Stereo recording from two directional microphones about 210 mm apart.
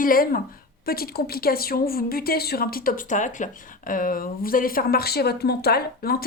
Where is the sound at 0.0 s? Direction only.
45° left (ahead or behind).